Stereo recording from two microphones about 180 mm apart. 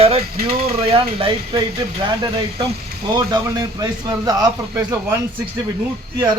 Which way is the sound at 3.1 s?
20° right (ahead or behind).